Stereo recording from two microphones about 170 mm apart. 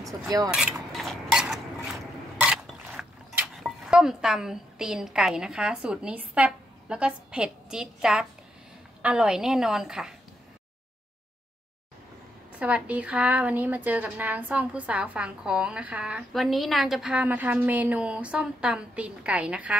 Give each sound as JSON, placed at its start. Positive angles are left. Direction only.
{"t": 0.0, "sound": "speech", "side_deg": -20}
{"t": 0.5, "sound": "dishes", "side_deg": -5}
{"t": 9.0, "sound": "a woman's voice", "side_deg": -5}
{"t": 12.5, "sound": "a woman's voice", "side_deg": -10}